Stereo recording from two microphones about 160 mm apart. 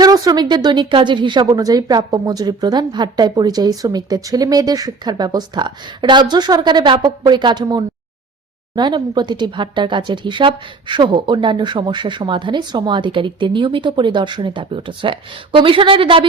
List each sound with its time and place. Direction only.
0.0 s speech: 25° right (ahead or behind)